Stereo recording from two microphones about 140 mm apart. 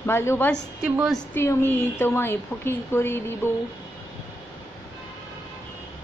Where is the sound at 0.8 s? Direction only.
10° right (ahead or behind).